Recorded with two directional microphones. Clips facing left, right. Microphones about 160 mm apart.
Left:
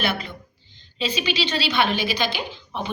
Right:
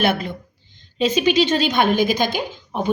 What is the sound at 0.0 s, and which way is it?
Speech, 50° right (ahead or behind).